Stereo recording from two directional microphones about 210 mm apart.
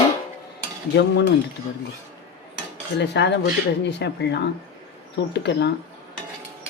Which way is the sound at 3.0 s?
55° left (ahead or behind).